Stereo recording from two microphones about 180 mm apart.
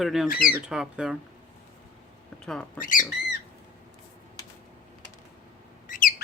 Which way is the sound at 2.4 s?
5° left (ahead or behind).